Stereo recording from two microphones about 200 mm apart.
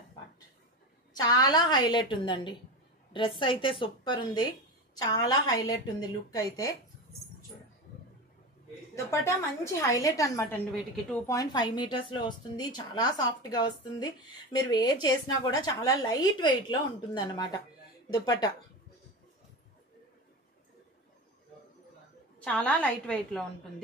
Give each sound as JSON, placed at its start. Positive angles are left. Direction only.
{"t": 1.1, "sound": "a woman's voice", "side_deg": 20}
{"t": 9.7, "sound": "a woman's voice", "side_deg": 15}
{"t": 22.4, "sound": "a woman's voice", "side_deg": 5}